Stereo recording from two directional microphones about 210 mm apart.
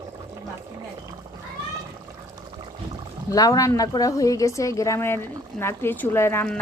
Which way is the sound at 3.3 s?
15° left (ahead or behind).